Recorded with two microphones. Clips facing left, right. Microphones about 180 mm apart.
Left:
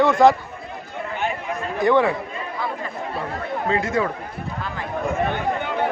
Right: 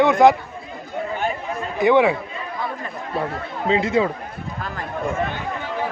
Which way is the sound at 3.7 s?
20° right (ahead or behind).